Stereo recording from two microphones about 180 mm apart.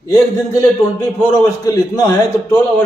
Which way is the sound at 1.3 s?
20° left (ahead or behind).